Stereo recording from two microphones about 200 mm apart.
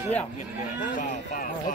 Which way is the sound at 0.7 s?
40° left (ahead or behind).